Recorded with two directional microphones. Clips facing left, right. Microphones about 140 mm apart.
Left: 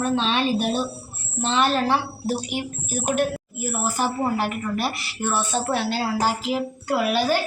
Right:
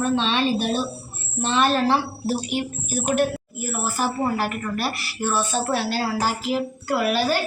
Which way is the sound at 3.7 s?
20° left (ahead or behind).